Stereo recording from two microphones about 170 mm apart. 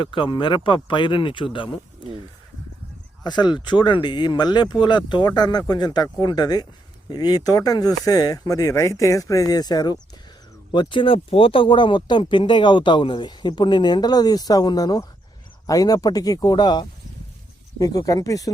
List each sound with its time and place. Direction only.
0.0 s speech: 30° left (ahead or behind)
3.2 s speech: 25° left (ahead or behind)